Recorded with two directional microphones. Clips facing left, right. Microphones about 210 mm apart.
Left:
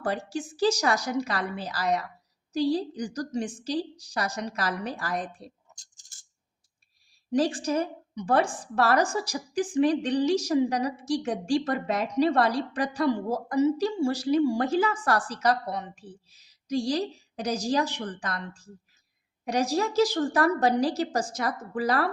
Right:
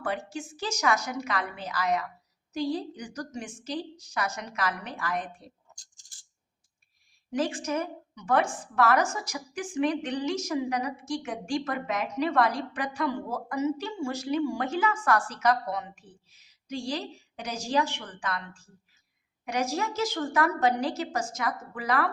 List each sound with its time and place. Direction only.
0.0 s a woman's voice: 35° left (ahead or behind)
7.3 s a woman's voice: 35° left (ahead or behind)